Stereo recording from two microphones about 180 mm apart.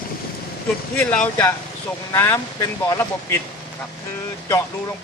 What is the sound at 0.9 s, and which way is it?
Speech, 5° left (ahead or behind).